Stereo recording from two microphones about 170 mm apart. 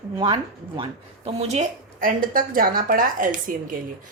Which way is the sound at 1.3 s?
40° right (ahead or behind).